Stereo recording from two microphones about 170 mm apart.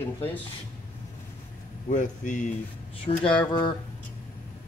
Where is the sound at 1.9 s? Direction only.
45° left (ahead or behind).